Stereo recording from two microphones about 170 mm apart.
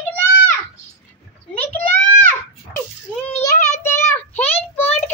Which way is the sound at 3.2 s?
15° left (ahead or behind).